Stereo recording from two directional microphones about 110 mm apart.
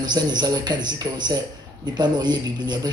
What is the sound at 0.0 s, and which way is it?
Speech, 40° right (ahead or behind).